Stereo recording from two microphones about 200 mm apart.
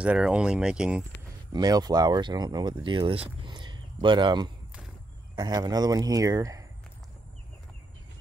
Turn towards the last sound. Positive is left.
turn(degrees=-15)  # may be behind; listen again after turning